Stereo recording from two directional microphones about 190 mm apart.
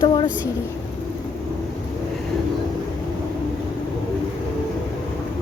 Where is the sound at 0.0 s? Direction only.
25° left (ahead or behind).